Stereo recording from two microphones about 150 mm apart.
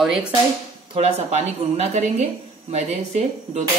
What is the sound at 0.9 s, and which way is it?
Speech, 45° right (ahead or behind).